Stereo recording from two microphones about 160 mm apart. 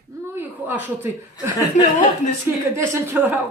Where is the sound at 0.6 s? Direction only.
15° right (ahead or behind).